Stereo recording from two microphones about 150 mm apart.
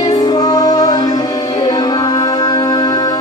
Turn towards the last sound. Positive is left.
turn(degrees=25)  # may be behind; listen again after turning